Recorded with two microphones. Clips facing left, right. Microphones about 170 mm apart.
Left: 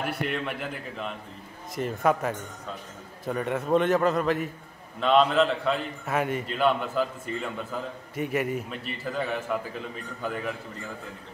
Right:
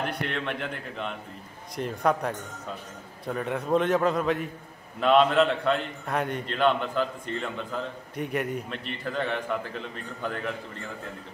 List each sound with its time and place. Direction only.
0.0 s a man's voice: 5° left (ahead or behind)